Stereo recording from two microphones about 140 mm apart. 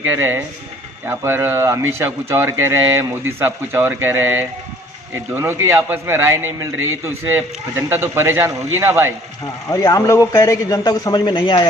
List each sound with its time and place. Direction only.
0.0 s speech: 15° right (ahead or behind)
9.6 s a man's voice: 25° left (ahead or behind)